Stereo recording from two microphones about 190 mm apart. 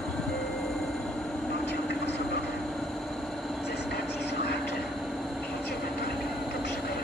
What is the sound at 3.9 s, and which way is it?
Vehicle, 60° left (ahead or behind).